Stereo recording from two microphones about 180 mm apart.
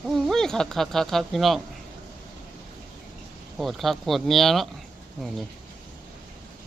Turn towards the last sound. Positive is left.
turn(degrees=0)  # may be behind; listen again after turning